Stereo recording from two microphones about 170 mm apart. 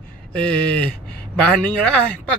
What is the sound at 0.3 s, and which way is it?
Speech, 5° left (ahead or behind).